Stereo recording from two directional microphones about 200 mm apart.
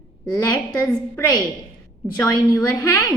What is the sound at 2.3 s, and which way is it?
Speech, 20° left (ahead or behind).